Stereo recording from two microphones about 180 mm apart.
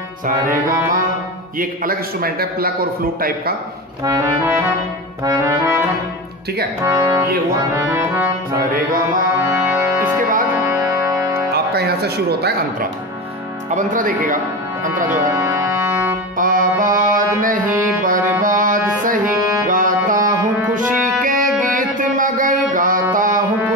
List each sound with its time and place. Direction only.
0.5 s a man's voice: 50° right (ahead or behind)
4.0 s accordion: 20° right (ahead or behind)
9.5 s music: 15° right (ahead or behind)
11.5 s music: 60° right (ahead or behind)
13.7 s speech: 45° right (ahead or behind)
15.0 s music: 15° right (ahead or behind)
16.3 s music: 50° right (ahead or behind)